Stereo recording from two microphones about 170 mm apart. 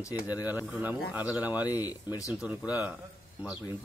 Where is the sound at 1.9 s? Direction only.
20° left (ahead or behind).